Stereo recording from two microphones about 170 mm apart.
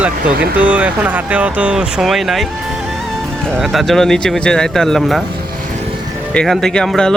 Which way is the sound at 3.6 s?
Centre (ahead or behind).